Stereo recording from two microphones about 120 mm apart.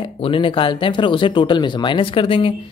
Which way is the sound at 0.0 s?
45° left (ahead or behind).